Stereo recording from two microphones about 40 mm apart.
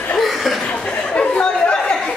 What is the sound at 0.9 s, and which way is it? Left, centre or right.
Chatter, left.